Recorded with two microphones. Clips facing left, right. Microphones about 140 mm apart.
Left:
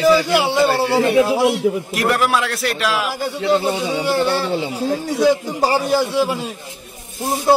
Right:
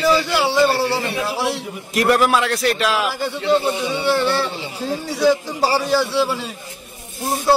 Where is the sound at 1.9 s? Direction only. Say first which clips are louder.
Right 2 dB; centre (ahead or behind).